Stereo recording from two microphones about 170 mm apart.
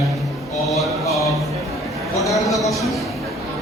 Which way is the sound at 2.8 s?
Centre (ahead or behind).